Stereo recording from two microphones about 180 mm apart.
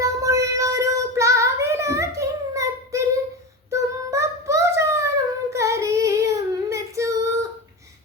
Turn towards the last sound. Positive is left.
turn(degrees=-15)  # may be behind; listen again after turning